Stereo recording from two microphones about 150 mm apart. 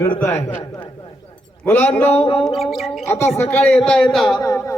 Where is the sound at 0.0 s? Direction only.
15° left (ahead or behind).